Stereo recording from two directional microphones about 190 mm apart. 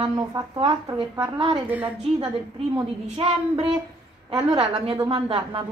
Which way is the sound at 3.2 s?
30° right (ahead or behind).